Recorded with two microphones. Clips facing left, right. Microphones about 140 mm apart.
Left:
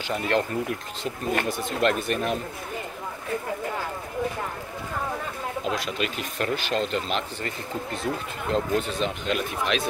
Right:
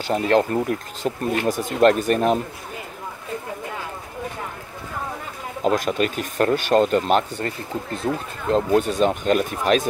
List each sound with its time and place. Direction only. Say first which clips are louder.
0.1 s speech: right 6 dB; 40° right (ahead or behind)
5.6 s speech: right 9 dB; 45° right (ahead or behind)